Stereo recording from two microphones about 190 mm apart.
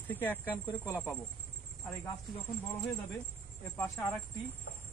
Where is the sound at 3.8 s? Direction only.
10° left (ahead or behind).